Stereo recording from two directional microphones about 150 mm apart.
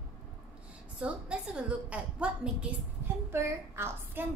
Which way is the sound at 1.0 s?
5° right (ahead or behind).